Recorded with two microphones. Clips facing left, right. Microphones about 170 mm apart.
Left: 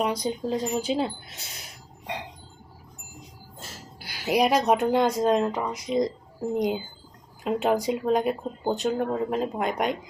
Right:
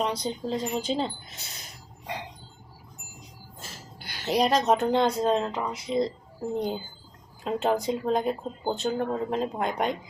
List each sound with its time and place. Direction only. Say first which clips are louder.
0.0 s speech: left 2 dB; 10° left (ahead or behind)
4.0 s speech: left 2 dB; 10° left (ahead or behind)